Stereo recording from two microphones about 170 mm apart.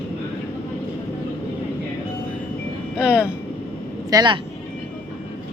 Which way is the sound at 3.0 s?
5° right (ahead or behind).